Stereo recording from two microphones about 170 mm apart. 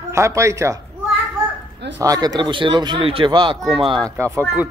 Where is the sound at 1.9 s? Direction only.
20° right (ahead or behind).